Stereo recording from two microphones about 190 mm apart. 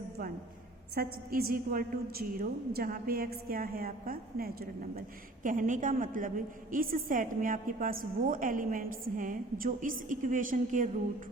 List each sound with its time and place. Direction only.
0.9 s a woman's voice: 50° right (ahead or behind)